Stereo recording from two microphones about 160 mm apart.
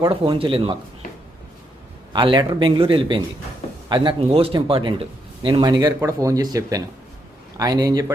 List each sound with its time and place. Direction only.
0.1 s a man's voice: 30° right (ahead or behind)
2.1 s a man's voice: 30° right (ahead or behind)